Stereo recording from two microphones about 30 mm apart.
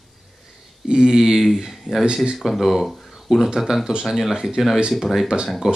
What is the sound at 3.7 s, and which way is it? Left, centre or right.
Speech, centre.